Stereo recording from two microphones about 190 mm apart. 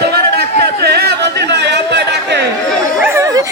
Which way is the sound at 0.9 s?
60° right (ahead or behind).